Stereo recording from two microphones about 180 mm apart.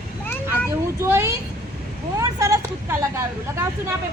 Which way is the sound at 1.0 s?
15° right (ahead or behind).